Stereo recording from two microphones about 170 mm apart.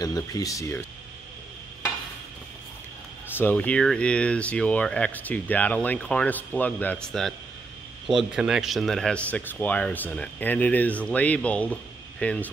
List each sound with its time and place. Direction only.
0.0 s speech: 20° left (ahead or behind)
3.3 s speech: 10° left (ahead or behind)